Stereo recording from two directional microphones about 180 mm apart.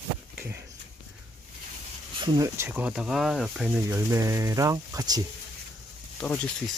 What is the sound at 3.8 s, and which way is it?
Speech, 15° right (ahead or behind).